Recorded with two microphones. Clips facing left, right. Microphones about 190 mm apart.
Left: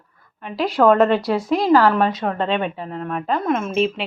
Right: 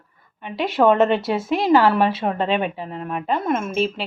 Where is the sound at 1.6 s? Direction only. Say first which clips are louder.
Even; 25° right (ahead or behind).